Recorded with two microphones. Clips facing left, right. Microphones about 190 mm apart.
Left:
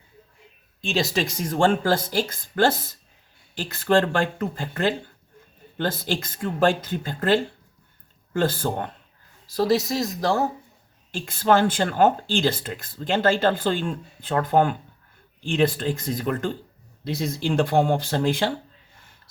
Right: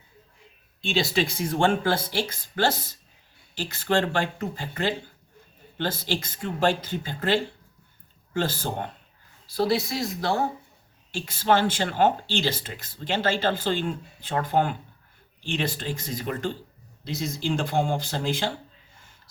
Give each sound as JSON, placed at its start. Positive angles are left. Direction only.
{"t": 0.9, "sound": "speech", "side_deg": 45}
{"t": 6.0, "sound": "speech", "side_deg": 50}
{"t": 11.5, "sound": "speech", "side_deg": 50}